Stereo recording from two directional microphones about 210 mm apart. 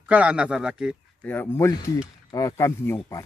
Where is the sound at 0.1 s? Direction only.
5° right (ahead or behind).